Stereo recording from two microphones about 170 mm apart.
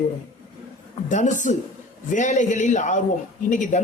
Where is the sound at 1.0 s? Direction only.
45° left (ahead or behind).